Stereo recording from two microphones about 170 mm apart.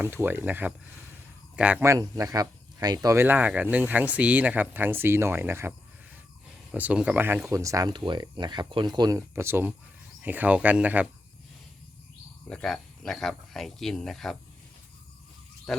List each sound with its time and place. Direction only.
0.0 s speech: 15° right (ahead or behind)
12.5 s speech: 5° left (ahead or behind)
15.7 s speech: centre (ahead or behind)